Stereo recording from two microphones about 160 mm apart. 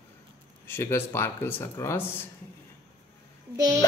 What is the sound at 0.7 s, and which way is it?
Speech, 15° left (ahead or behind).